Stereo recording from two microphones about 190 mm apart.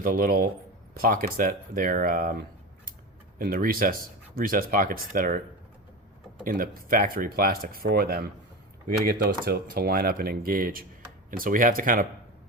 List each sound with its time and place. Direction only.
0.0 s speech: 50° right (ahead or behind)
6.4 s speech: 50° right (ahead or behind)